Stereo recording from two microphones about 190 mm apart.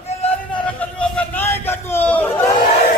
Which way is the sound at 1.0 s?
10° left (ahead or behind).